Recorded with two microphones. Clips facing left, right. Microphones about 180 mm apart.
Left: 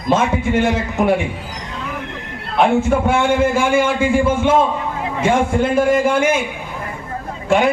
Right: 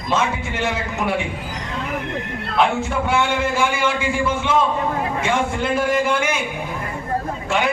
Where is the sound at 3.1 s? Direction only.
50° left (ahead or behind).